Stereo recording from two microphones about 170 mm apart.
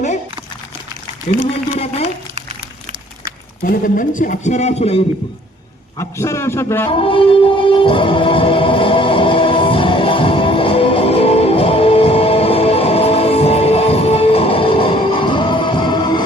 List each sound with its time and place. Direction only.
1.3 s a man's voice: 45° left (ahead or behind)
1.7 s a sound: 35° left (ahead or behind)
3.6 s a man's voice: 55° left (ahead or behind); by 4.9 s 40° left (ahead or behind)
6.0 s a man's voice: 15° left (ahead or behind)
7.0 s music: 30° left (ahead or behind)